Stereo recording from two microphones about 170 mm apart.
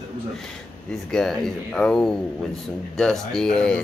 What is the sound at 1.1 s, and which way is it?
Speech, centre (ahead or behind).